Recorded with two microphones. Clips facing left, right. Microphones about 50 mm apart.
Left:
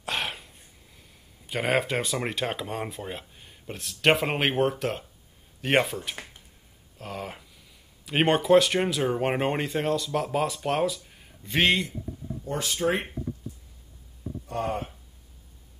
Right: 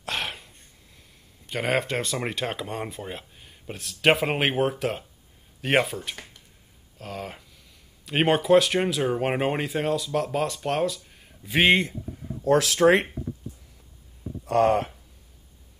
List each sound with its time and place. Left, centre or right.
0.0 s a sound: centre
1.5 s speech: centre
12.4 s speech: right
14.4 s speech: right